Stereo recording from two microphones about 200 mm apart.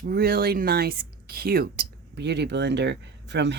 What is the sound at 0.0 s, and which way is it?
Speech, 50° right (ahead or behind).